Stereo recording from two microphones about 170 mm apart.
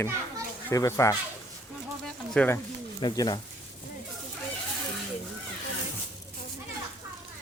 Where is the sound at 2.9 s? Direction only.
25° left (ahead or behind).